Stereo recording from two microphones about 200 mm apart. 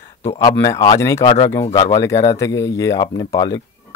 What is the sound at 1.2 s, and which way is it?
Speech, 25° left (ahead or behind).